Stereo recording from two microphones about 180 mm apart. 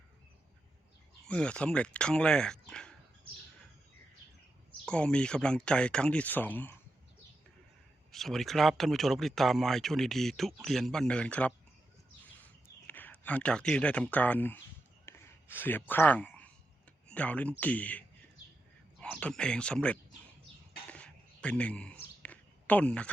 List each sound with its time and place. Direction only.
1.2 s speech: 5° left (ahead or behind)
4.9 s speech: 5° left (ahead or behind)
8.1 s speech: centre (ahead or behind)
12.9 s speech: 10° left (ahead or behind)
15.0 s a sound: 15° left (ahead or behind)
17.1 s speech: 10° left (ahead or behind)
20.9 s a sound: 5° left (ahead or behind)